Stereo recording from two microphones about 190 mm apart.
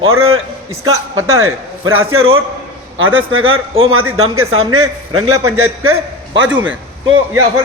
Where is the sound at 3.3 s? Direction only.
90° right.